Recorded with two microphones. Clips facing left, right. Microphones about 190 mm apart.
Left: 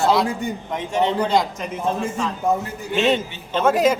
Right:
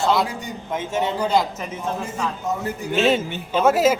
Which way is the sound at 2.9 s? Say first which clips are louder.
Even; centre (ahead or behind).